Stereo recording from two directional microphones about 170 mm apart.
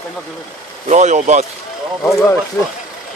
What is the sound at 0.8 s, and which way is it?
Speech, 45° right (ahead or behind).